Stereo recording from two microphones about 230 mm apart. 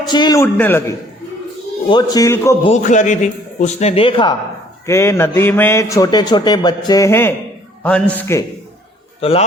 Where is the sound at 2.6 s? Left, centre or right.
Left.